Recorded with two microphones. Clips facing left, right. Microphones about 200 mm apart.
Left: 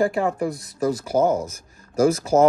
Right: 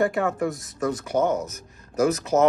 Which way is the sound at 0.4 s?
Centre (ahead or behind).